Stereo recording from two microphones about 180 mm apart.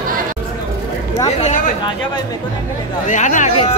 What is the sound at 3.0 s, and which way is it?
Chatter, 45° left (ahead or behind).